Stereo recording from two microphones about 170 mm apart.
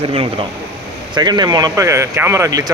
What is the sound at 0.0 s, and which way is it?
Speech, 30° right (ahead or behind).